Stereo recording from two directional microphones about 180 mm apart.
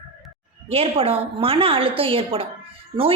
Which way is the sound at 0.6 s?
30° right (ahead or behind).